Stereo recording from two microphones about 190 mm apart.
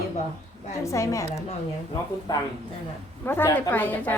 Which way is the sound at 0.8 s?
15° left (ahead or behind).